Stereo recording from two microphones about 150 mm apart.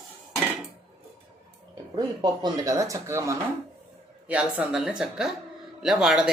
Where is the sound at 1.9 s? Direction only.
25° right (ahead or behind).